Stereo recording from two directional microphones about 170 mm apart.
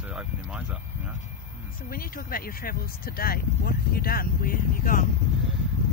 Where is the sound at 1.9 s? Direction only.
60° left (ahead or behind).